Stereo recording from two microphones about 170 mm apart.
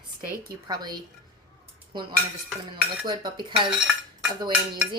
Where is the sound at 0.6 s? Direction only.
25° right (ahead or behind).